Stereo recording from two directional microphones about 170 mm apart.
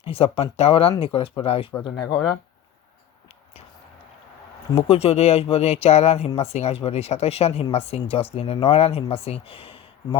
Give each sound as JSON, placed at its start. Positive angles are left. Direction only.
{"t": 0.0, "sound": "speech", "side_deg": 35}
{"t": 4.7, "sound": "speech", "side_deg": 35}